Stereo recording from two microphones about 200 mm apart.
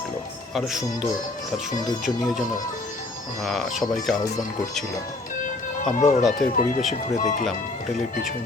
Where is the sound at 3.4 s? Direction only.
Centre (ahead or behind).